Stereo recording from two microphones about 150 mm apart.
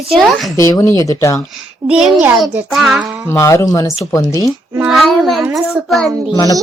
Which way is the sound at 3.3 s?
20° left (ahead or behind).